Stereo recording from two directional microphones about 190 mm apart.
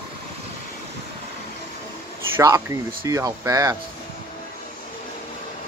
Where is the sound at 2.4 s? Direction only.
15° right (ahead or behind).